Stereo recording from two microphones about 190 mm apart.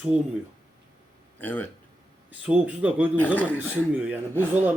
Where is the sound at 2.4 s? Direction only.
5° right (ahead or behind).